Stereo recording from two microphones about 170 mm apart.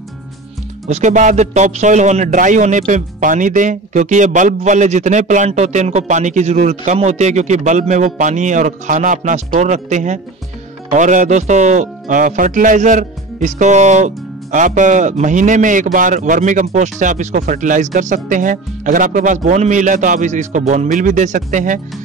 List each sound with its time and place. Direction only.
0.8 s speech: 45° right (ahead or behind)